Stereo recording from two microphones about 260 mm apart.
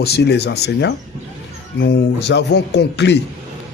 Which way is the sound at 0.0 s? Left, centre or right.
Left.